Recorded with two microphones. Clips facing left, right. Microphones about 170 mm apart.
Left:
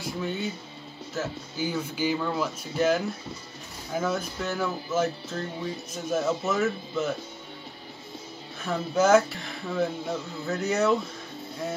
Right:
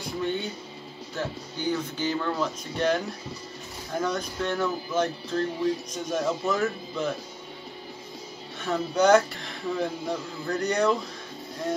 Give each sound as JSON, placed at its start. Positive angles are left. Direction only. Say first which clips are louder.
{"t": 0.0, "sound": "speech", "louder": "right 1 dB", "side_deg": 0}
{"t": 8.5, "sound": "speech", "louder": "right 1 dB", "side_deg": 0}